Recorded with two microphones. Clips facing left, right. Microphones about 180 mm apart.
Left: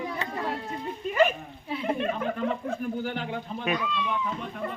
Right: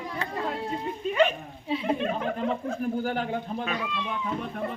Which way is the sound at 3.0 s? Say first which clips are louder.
Right 3 dB; 45° right (ahead or behind).